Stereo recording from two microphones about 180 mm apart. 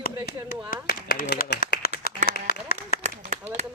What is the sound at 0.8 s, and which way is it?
Clapping, 60° left (ahead or behind).